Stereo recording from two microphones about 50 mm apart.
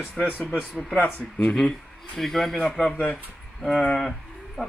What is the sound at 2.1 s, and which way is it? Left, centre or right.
A man's voice, centre.